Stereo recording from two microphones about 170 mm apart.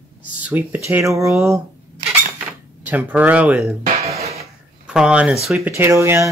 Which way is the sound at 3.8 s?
40° right (ahead or behind).